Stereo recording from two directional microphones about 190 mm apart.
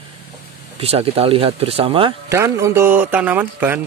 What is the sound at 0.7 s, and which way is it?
Speech, 30° right (ahead or behind).